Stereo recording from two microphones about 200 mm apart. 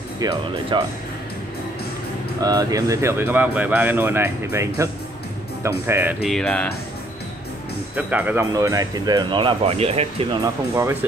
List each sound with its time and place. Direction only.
0.2 s speech: 20° right (ahead or behind)
2.4 s speech: 20° right (ahead or behind)
6.2 s speech: 5° left (ahead or behind)
7.9 s speech: 10° right (ahead or behind); by 10.0 s 30° right (ahead or behind)
10.4 s speech: 15° right (ahead or behind)